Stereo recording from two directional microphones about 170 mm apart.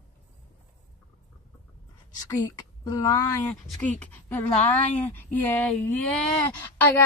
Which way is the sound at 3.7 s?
10° left (ahead or behind).